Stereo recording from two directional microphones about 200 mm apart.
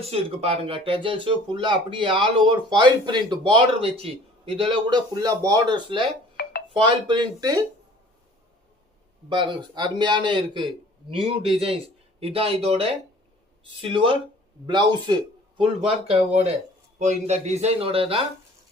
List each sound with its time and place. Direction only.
0.0 s a man's voice: 30° right (ahead or behind)
7.1 s a man's voice: 20° right (ahead or behind)
9.3 s a man's voice: 25° right (ahead or behind)